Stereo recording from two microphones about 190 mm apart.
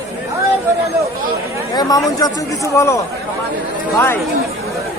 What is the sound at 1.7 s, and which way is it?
Speech, 20° left (ahead or behind).